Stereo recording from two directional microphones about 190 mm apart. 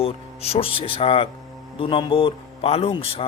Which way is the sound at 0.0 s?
35° left (ahead or behind).